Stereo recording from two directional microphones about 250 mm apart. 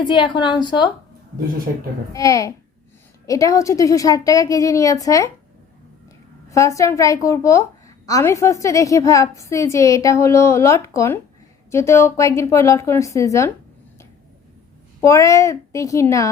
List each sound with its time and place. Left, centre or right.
0.0 s a woman's voice: centre
2.1 s a woman's voice: centre
6.5 s a woman's voice: centre
15.0 s a woman's voice: centre